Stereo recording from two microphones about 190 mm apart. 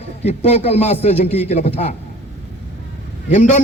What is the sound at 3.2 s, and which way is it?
Speech, 40° left (ahead or behind).